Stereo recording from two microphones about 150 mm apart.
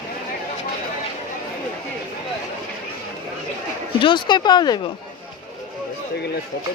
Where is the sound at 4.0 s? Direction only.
30° left (ahead or behind).